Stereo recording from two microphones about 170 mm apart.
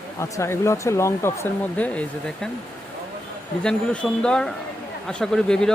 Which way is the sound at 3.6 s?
5° left (ahead or behind).